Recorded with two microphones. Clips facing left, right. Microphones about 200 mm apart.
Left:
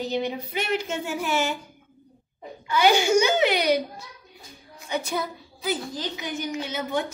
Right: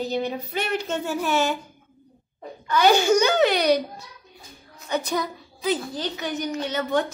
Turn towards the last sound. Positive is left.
turn(degrees=10)  # may be behind; listen again after turning